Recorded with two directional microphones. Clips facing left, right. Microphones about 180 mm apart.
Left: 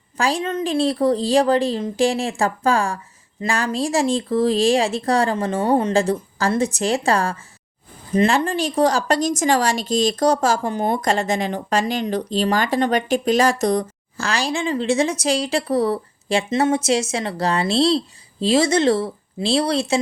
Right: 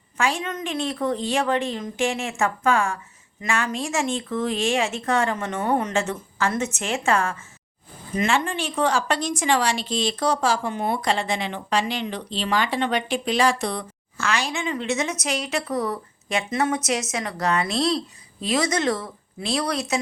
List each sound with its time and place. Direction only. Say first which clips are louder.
0.2 s a woman's voice: left 4 dB; 35° left (ahead or behind)